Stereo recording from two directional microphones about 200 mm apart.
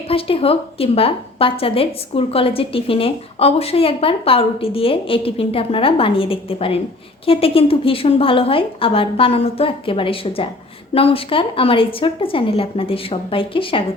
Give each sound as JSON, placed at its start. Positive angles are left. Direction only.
{"t": 0.1, "sound": "a woman's voice", "side_deg": 30}